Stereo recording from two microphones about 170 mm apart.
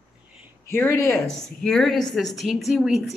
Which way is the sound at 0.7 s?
15° left (ahead or behind).